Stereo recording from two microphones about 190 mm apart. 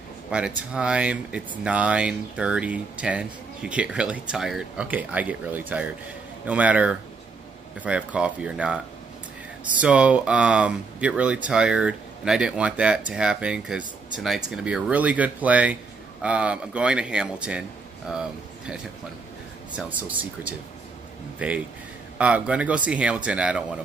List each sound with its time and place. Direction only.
0.6 s speech: 5° right (ahead or behind)
9.8 s speech: 5° right (ahead or behind)
19.7 s speech: 5° right (ahead or behind)